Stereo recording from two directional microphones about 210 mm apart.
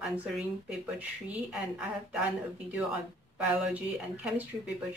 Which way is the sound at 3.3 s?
5° right (ahead or behind).